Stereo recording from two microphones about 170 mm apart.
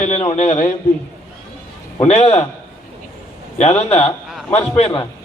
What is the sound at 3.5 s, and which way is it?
A man's voice, 40° left (ahead or behind).